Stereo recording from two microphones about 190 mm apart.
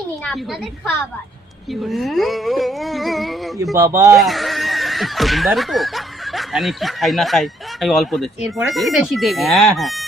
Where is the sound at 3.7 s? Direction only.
15° right (ahead or behind).